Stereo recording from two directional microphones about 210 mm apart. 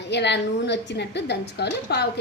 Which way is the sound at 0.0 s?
55° left (ahead or behind).